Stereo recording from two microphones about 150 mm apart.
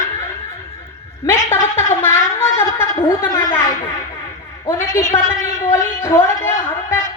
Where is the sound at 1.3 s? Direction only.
15° left (ahead or behind).